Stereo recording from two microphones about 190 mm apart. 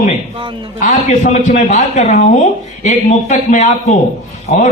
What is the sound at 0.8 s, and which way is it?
Speech, 40° left (ahead or behind).